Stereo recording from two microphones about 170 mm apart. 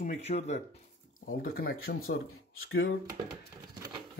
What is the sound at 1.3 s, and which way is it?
Speech, 60° left (ahead or behind).